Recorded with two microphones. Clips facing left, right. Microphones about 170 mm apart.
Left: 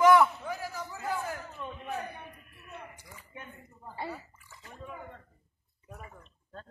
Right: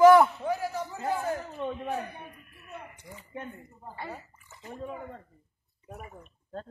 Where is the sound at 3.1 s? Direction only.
30° right (ahead or behind).